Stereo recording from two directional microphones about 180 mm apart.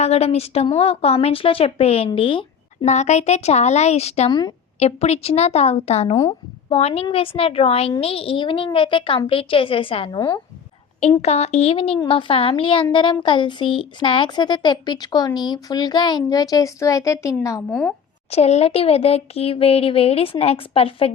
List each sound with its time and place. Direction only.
0.0 s speech: 35° left (ahead or behind)
4.3 s a woman's voice: 25° left (ahead or behind)
4.8 s a woman's voice: 35° left (ahead or behind)
11.2 s a woman's voice: 35° left (ahead or behind); by 17.6 s 20° left (ahead or behind)
17.7 s speech: 5° left (ahead or behind)
18.3 s speech: 35° left (ahead or behind)